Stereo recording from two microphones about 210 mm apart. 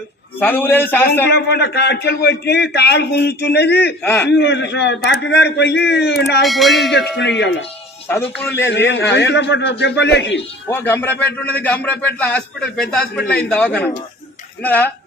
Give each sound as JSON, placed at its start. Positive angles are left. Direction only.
{"t": 0.3, "sound": "speech", "side_deg": 10}
{"t": 1.3, "sound": "a man's voice", "side_deg": 50}
{"t": 4.0, "sound": "speech", "side_deg": 10}
{"t": 4.3, "sound": "a man's voice", "side_deg": 55}
{"t": 6.4, "sound": "speech", "side_deg": 0}
{"t": 8.0, "sound": "speech", "side_deg": 10}
{"t": 8.7, "sound": "a man's voice", "side_deg": 55}
{"t": 10.7, "sound": "speech", "side_deg": 10}